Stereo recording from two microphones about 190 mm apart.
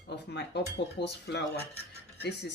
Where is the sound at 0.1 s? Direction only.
60° left (ahead or behind).